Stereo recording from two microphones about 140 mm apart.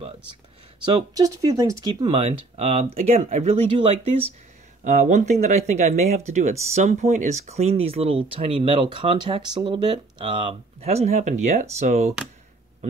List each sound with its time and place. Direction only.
1.1 s speech: 25° right (ahead or behind)
2.0 s speech: 45° right (ahead or behind)
4.8 s speech: 65° right (ahead or behind)